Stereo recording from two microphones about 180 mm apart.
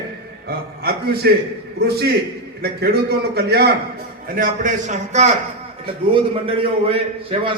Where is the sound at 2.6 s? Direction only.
60° right (ahead or behind).